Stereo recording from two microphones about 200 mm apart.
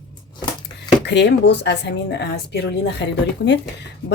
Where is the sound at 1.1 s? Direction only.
60° left (ahead or behind).